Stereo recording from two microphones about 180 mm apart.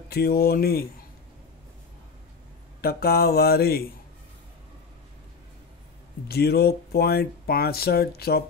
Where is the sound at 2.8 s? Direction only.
60° left (ahead or behind).